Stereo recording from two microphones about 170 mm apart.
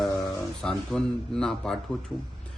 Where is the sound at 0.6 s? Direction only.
5° left (ahead or behind).